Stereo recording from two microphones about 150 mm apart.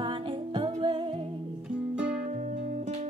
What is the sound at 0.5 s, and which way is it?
Music, 35° right (ahead or behind).